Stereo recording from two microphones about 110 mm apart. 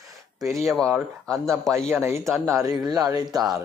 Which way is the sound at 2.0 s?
25° right (ahead or behind).